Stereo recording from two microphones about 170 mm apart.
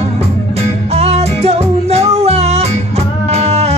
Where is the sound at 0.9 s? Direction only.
40° right (ahead or behind).